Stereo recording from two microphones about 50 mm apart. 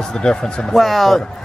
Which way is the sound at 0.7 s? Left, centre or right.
Centre.